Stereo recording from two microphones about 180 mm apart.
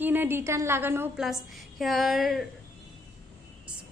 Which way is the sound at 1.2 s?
Centre (ahead or behind).